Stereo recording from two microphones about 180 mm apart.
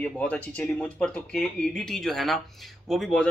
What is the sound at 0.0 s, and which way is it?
Speech, 10° left (ahead or behind).